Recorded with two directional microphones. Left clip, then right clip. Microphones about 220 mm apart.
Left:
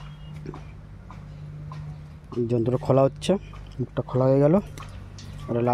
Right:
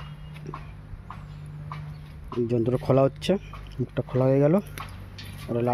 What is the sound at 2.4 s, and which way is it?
Speech, centre (ahead or behind).